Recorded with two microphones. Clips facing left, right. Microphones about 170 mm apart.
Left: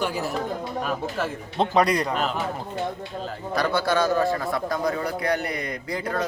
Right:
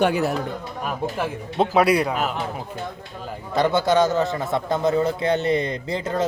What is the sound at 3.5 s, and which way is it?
Speech, 20° right (ahead or behind).